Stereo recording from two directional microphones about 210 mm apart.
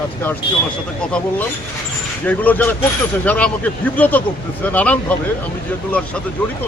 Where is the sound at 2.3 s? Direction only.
10° left (ahead or behind).